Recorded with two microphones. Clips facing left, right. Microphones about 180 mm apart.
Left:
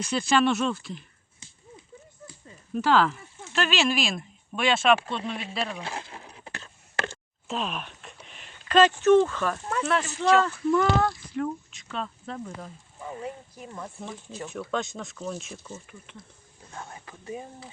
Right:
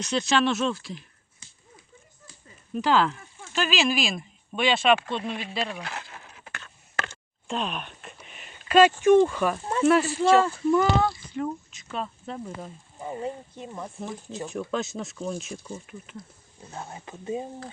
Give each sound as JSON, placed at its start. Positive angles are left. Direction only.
{"t": 0.0, "sound": "speech", "side_deg": 5}
{"t": 2.7, "sound": "speech", "side_deg": 0}
{"t": 5.8, "sound": "a sound", "side_deg": 25}
{"t": 7.4, "sound": "speech", "side_deg": 0}
{"t": 10.5, "sound": "speech", "side_deg": -25}
{"t": 10.8, "sound": "speech", "side_deg": -5}
{"t": 13.0, "sound": "speech", "side_deg": -25}
{"t": 13.7, "sound": "speech", "side_deg": -15}
{"t": 16.2, "sound": "speech", "side_deg": 30}
{"t": 16.7, "sound": "speech", "side_deg": -20}